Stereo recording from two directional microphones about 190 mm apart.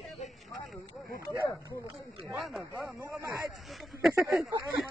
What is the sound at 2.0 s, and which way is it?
Speech, centre (ahead or behind).